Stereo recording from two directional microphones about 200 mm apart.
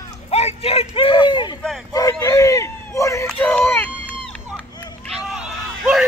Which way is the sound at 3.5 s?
10° left (ahead or behind).